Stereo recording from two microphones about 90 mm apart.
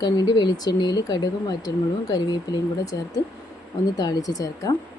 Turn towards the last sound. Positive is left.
turn(degrees=40)  # may be behind; listen again after turning